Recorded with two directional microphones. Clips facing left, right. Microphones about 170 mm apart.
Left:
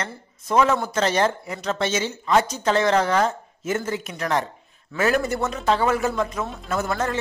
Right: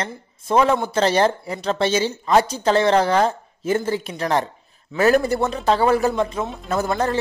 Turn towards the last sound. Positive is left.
turn(degrees=-35)  # may be behind; listen again after turning